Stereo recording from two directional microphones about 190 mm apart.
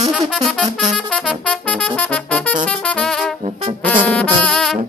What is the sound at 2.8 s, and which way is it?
Brass instrument, 5° left (ahead or behind).